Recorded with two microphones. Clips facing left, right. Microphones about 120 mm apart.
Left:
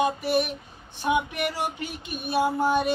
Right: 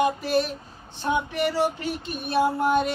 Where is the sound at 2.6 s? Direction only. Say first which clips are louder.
Right 1 dB; centre (ahead or behind).